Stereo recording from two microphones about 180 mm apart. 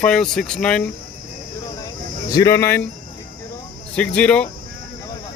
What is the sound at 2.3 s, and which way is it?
Speech, 20° left (ahead or behind).